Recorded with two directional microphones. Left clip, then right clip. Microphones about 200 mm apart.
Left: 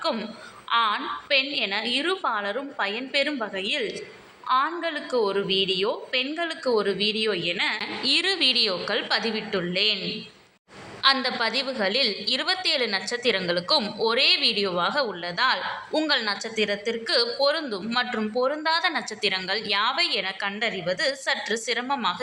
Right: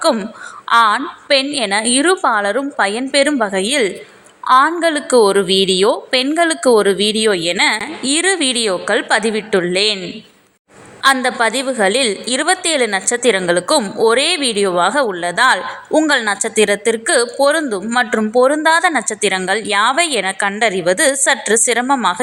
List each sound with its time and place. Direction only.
0.0 s a woman's voice: 45° right (ahead or behind)
11.0 s a woman's voice: 40° right (ahead or behind)